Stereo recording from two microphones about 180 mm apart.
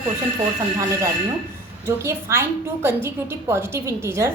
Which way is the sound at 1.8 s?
15° right (ahead or behind).